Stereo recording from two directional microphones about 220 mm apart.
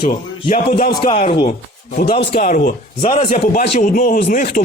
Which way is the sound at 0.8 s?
40° left (ahead or behind).